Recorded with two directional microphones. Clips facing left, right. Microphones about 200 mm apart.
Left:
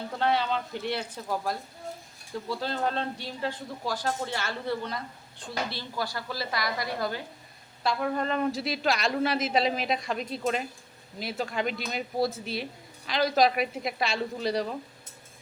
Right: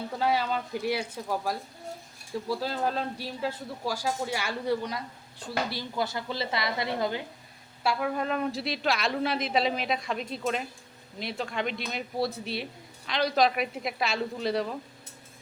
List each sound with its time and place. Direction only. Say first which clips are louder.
0.2 s a woman's voice: left 1 dB; 5° right (ahead or behind)
6.1 s a woman's voice: right 2 dB; 20° right (ahead or behind)
7.9 s a woman's voice: even; 5° right (ahead or behind)